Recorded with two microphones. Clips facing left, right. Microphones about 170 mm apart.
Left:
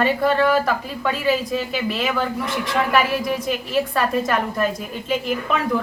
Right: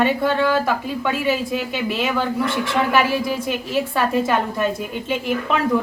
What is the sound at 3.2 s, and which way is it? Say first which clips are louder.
A woman's voice: even; centre (ahead or behind).